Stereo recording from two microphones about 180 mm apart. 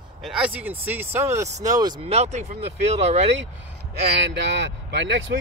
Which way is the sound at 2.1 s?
40° right (ahead or behind).